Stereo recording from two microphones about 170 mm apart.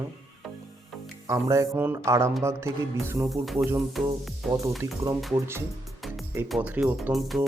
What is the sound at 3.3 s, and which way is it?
Speech, centre (ahead or behind).